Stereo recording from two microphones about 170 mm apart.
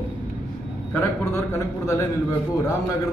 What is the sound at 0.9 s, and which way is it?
Speech, 15° left (ahead or behind).